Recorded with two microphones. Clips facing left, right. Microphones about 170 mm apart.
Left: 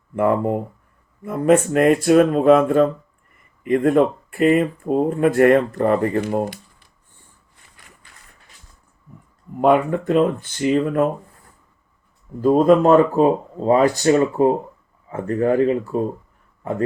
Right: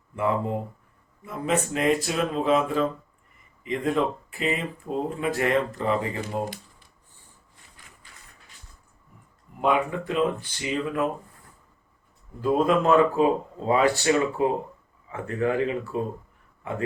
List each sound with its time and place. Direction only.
0.2 s speech: 55° left (ahead or behind)
9.6 s speech: 50° left (ahead or behind)
12.4 s a man's voice: 40° left (ahead or behind)